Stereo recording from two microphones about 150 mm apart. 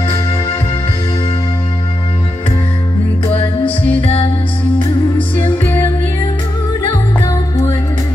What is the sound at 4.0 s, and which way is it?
Music, 40° left (ahead or behind).